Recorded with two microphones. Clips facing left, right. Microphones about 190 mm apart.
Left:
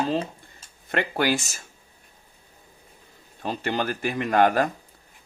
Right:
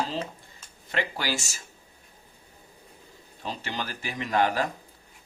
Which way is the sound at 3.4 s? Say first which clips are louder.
Left 7 dB; 55° left (ahead or behind).